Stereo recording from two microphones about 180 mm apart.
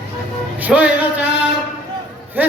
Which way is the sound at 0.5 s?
10° right (ahead or behind).